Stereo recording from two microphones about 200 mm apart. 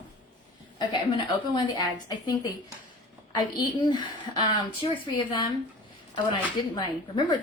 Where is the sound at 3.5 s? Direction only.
20° left (ahead or behind).